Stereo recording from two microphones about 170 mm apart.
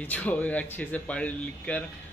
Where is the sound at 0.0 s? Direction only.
10° left (ahead or behind).